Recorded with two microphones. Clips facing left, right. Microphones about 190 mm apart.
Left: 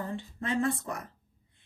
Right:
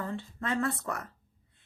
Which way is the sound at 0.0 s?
15° left (ahead or behind).